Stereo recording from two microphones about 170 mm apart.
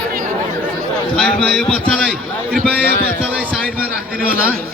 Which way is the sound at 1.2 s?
5° left (ahead or behind).